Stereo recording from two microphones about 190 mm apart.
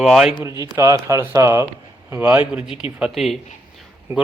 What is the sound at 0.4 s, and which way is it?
Speech, 15° right (ahead or behind).